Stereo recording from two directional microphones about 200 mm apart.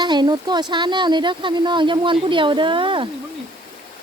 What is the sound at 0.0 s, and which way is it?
Speech, 20° right (ahead or behind).